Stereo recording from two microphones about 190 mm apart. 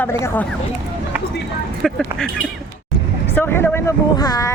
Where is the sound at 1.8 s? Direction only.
5° left (ahead or behind).